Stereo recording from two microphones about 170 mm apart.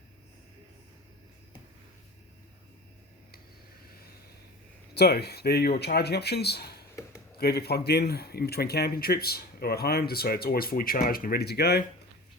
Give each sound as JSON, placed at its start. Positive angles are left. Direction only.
{"t": 4.9, "sound": "a man's voice", "side_deg": 70}